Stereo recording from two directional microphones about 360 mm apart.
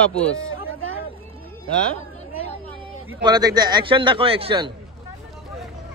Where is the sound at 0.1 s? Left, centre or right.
Centre.